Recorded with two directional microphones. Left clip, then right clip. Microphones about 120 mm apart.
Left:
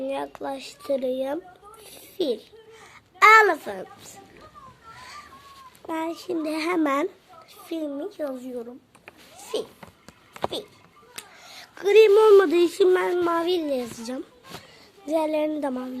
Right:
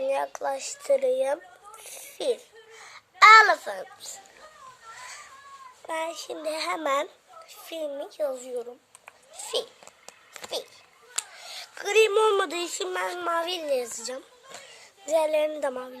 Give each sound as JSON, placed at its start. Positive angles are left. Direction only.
{"t": 0.1, "sound": "a child's voice", "side_deg": 20}
{"t": 2.7, "sound": "a child's voice", "side_deg": 20}
{"t": 4.9, "sound": "a sound", "side_deg": 0}
{"t": 5.8, "sound": "a woman's voice", "side_deg": 0}
{"t": 11.3, "sound": "speech", "side_deg": 0}
{"t": 12.9, "sound": "a woman's voice", "side_deg": -5}